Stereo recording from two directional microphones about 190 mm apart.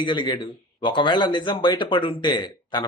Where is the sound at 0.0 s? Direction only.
25° left (ahead or behind).